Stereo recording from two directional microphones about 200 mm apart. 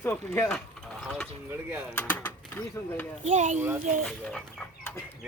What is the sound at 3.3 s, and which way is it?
Speech, 35° right (ahead or behind).